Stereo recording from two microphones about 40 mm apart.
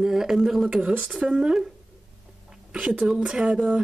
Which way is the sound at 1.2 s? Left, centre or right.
Right.